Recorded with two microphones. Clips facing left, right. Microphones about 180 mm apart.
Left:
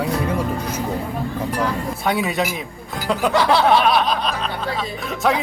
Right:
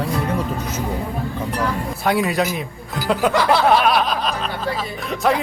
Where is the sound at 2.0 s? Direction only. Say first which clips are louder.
Right 2 dB; centre (ahead or behind).